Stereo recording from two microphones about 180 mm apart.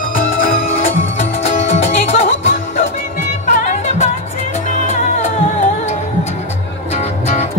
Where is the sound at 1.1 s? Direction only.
40° left (ahead or behind).